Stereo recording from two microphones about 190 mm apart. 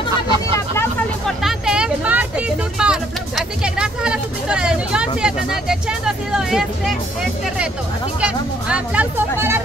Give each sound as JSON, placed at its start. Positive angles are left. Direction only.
{"t": 1.2, "sound": "speech", "side_deg": 0}
{"t": 8.2, "sound": "speech", "side_deg": -5}